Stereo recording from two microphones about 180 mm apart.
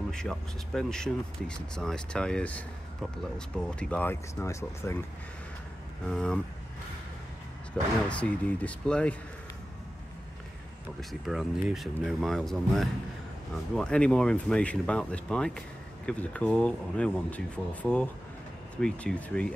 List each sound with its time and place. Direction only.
0.1 s speech: 5° left (ahead or behind)
6.0 s speech: 5° left (ahead or behind)
7.7 s speech: 5° left (ahead or behind)
11.0 s speech: centre (ahead or behind)